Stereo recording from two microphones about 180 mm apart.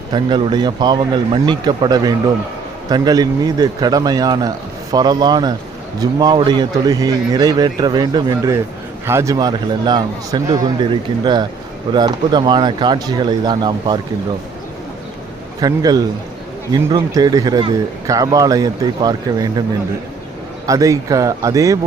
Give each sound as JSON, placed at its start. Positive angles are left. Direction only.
{"t": 0.1, "sound": "a man's voice", "side_deg": -25}
{"t": 15.6, "sound": "a man's voice", "side_deg": -20}
{"t": 20.7, "sound": "a man's voice", "side_deg": -20}